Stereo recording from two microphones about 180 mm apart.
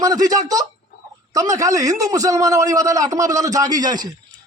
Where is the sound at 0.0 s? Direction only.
20° right (ahead or behind).